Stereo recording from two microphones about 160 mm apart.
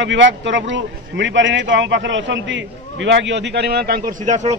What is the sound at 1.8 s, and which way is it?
A man's voice, 90° right.